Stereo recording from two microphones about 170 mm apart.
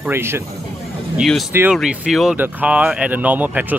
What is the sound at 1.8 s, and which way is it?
Speech, centre (ahead or behind).